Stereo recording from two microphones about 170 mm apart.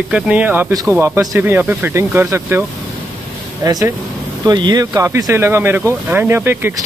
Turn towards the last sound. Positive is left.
turn(degrees=-10)  # may be behind; listen again after turning